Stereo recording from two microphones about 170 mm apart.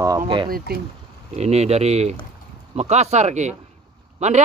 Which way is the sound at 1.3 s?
40° right (ahead or behind).